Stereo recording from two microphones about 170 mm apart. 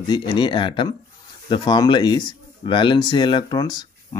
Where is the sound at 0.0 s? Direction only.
25° left (ahead or behind).